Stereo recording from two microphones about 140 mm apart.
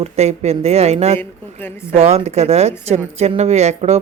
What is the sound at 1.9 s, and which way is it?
Speech, 50° right (ahead or behind).